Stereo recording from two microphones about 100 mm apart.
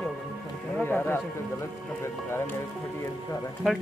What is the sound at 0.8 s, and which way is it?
Speech, 20° left (ahead or behind).